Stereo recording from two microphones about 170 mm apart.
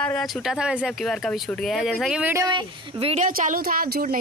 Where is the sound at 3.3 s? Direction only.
60° right (ahead or behind).